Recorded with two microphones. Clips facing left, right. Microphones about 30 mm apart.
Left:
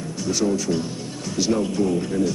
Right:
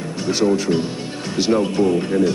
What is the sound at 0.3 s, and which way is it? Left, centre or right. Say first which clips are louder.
A man's voice: right 5 dB; right.